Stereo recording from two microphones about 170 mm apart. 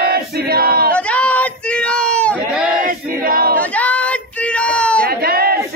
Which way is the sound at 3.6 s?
10° left (ahead or behind).